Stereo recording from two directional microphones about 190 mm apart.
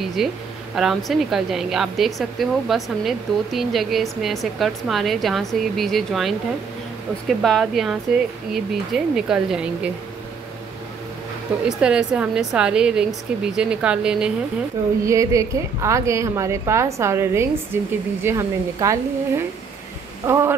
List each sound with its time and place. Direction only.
0.2 s a woman's voice: centre (ahead or behind)
11.5 s a woman's voice: 5° right (ahead or behind)
15.0 s a woman's voice: 15° right (ahead or behind)